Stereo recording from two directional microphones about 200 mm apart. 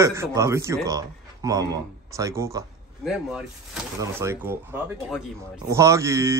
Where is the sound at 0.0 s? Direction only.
15° right (ahead or behind).